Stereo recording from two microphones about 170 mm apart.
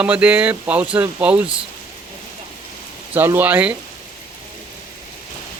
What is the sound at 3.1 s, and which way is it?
Speech, 10° right (ahead or behind).